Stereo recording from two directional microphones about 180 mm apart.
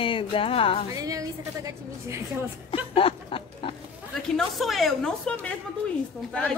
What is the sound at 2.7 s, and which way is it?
A woman's voice, 30° left (ahead or behind).